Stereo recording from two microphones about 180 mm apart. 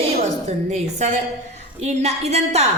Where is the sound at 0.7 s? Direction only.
40° right (ahead or behind).